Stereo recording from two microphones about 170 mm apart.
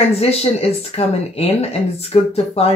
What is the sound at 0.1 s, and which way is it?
Speech, 35° left (ahead or behind).